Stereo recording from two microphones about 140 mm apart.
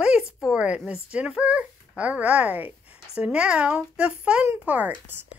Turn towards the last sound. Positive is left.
turn(degrees=-10)  # may be behind; listen again after turning